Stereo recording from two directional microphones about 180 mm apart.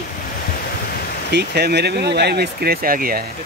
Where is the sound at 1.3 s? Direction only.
65° right (ahead or behind).